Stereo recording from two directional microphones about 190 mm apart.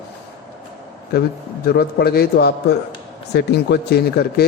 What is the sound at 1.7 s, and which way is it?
Speech, 55° left (ahead or behind).